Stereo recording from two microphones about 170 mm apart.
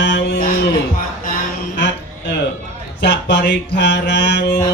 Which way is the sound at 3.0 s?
90° left.